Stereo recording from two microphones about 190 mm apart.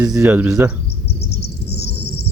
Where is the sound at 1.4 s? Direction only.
60° left (ahead or behind).